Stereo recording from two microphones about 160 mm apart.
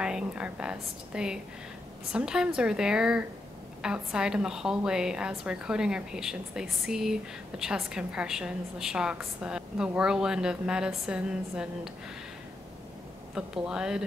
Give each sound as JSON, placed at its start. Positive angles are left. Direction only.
{"t": 0.0, "sound": "a woman's voice", "side_deg": -5}
{"t": 13.3, "sound": "a woman's voice", "side_deg": -5}